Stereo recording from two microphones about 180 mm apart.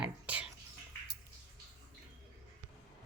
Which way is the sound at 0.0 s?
5° right (ahead or behind).